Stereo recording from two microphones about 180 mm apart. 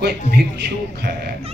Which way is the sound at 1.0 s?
65° right (ahead or behind).